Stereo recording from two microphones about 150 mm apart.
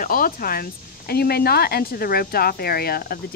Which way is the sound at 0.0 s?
70° left (ahead or behind).